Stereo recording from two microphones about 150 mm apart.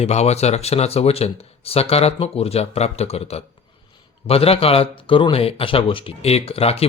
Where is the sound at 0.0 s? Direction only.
45° left (ahead or behind).